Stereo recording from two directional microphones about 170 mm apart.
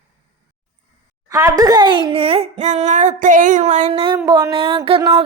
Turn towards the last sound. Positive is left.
turn(degrees=-30)  # may be behind; listen again after turning